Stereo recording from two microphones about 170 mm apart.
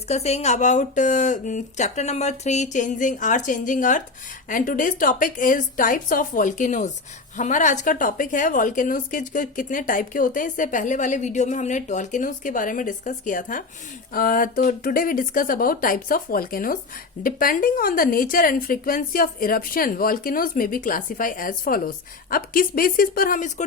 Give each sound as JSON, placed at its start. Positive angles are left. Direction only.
{"t": 0.1, "sound": "a woman's voice", "side_deg": 40}